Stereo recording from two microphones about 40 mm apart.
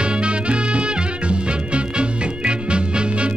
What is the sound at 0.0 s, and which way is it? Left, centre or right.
Music, right.